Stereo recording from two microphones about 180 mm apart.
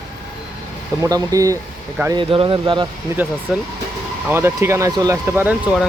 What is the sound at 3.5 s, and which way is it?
Speech, 5° right (ahead or behind).